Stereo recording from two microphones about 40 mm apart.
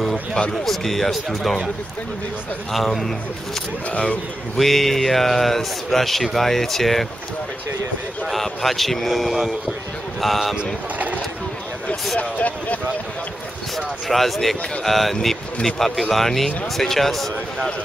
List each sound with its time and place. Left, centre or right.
0.7 s speech: centre
2.7 s speech: centre
3.9 s speech: left
4.6 s speech: centre
8.3 s speech: centre
12.2 s speech: left
13.7 s speech: centre